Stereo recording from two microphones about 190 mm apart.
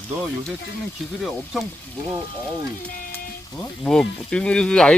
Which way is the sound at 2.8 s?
45° left (ahead or behind).